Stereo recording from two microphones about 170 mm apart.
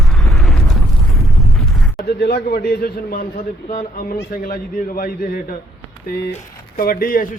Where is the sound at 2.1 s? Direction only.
70° left (ahead or behind).